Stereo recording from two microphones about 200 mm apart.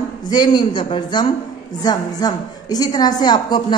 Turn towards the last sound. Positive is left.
turn(degrees=20)  # may be behind; listen again after turning